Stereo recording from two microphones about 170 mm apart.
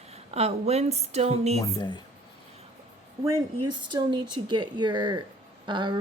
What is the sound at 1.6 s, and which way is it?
Speech, 25° left (ahead or behind).